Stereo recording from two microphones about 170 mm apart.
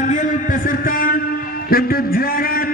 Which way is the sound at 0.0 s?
50° left (ahead or behind).